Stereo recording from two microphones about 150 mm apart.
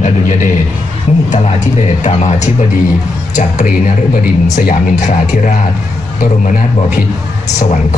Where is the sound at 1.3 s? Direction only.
55° left (ahead or behind).